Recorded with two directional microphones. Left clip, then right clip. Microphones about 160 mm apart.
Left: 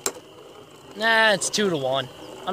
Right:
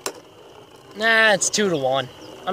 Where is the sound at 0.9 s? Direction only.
50° right (ahead or behind).